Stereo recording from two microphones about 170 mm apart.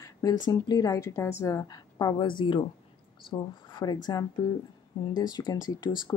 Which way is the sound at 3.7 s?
25° left (ahead or behind).